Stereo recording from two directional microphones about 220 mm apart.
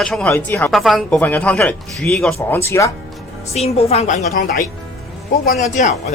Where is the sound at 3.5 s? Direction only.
30° left (ahead or behind).